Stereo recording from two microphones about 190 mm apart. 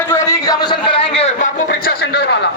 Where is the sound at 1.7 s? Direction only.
55° left (ahead or behind).